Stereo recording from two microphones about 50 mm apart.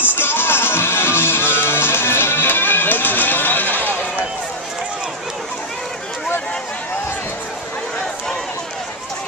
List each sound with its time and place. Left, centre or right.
0.0 s music: left